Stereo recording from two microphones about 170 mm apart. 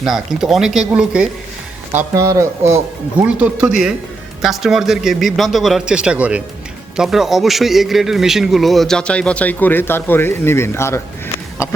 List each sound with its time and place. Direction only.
0.0 s a man's voice: centre (ahead or behind); by 11.0 s 15° left (ahead or behind)